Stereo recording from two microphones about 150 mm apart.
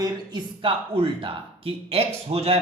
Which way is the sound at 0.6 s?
35° right (ahead or behind).